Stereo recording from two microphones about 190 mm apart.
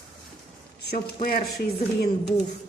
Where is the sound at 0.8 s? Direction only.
50° left (ahead or behind).